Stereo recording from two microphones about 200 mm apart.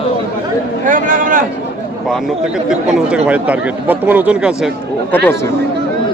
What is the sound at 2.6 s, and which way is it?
Speech, 5° right (ahead or behind).